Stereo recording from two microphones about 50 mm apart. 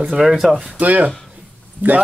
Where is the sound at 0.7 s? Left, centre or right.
Right.